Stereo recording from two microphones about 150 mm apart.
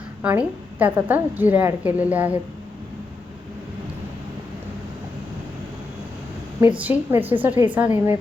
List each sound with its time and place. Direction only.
0.2 s a woman's voice: 10° right (ahead or behind)
6.6 s a woman's voice: 10° right (ahead or behind)